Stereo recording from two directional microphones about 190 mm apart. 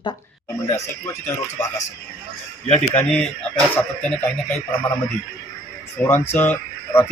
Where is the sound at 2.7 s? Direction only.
5° left (ahead or behind).